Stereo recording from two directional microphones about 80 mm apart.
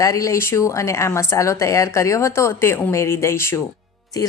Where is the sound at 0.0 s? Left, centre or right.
Left.